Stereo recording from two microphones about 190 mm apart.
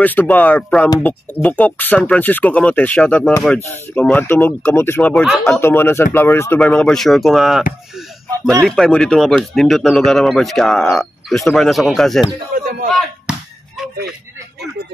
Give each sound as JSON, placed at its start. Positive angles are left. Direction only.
{"t": 0.0, "sound": "speech", "side_deg": 10}
{"t": 5.5, "sound": "speech", "side_deg": 10}
{"t": 8.3, "sound": "speech", "side_deg": -20}
{"t": 8.6, "sound": "speech", "side_deg": 5}
{"t": 12.5, "sound": "a sound", "side_deg": -45}
{"t": 13.3, "sound": "a sound", "side_deg": -5}